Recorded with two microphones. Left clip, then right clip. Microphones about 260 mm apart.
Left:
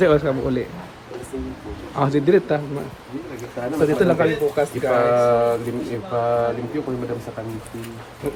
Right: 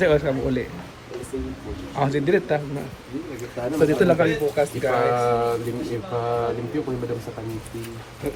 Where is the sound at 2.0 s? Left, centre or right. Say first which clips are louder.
Left 4 dB; centre.